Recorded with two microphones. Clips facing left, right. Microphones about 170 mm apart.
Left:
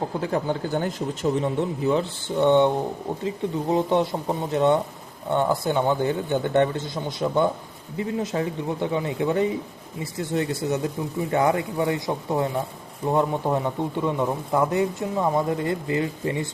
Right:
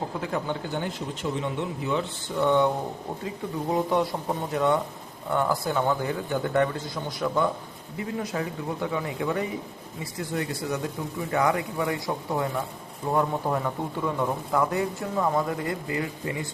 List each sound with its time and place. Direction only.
0.2 s speech: 35° left (ahead or behind)